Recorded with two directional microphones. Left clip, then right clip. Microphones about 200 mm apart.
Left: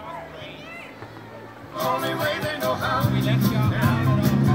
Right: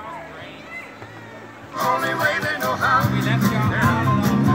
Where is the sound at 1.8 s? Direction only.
35° right (ahead or behind).